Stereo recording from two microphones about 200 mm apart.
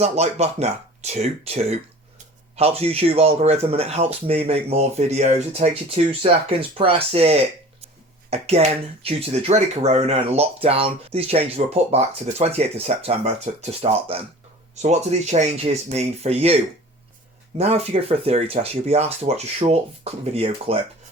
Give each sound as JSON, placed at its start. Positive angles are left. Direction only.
{"t": 0.0, "sound": "speech", "side_deg": -30}
{"t": 17.6, "sound": "speech", "side_deg": -30}